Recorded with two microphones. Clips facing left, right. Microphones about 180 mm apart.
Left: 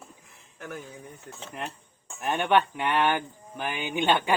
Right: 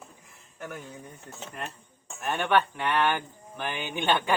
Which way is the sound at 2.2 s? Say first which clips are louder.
Left 2 dB; 15° left (ahead or behind).